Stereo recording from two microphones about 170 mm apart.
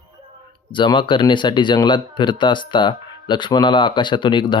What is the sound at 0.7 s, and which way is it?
Speech, 30° left (ahead or behind).